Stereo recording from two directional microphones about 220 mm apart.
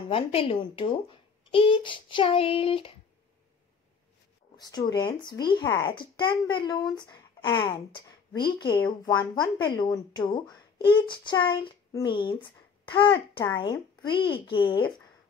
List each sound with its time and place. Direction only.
0.1 s speech: 25° left (ahead or behind)
4.6 s speech: 20° left (ahead or behind)